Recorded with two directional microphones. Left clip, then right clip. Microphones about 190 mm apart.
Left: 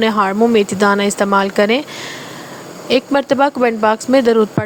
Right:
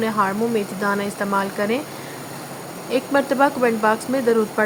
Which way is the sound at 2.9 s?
45° left (ahead or behind).